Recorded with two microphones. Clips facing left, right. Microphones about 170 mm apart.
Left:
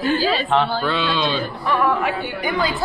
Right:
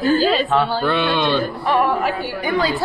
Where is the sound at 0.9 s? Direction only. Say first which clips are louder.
Right 3 dB; 60° right (ahead or behind).